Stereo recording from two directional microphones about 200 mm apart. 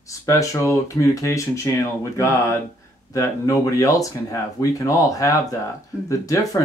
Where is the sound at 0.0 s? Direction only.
15° left (ahead or behind).